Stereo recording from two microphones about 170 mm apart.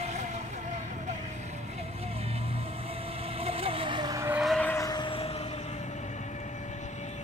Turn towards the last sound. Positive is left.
turn(degrees=35)  # may be behind; listen again after turning